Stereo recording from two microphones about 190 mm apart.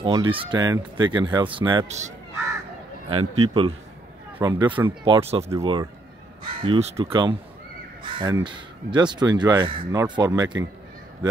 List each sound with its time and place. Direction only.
0.0 s speech: 25° right (ahead or behind)
1.9 s speech: 35° right (ahead or behind); by 10.7 s 20° right (ahead or behind)